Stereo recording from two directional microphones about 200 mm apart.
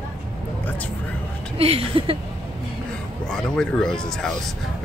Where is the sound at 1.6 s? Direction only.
30° right (ahead or behind).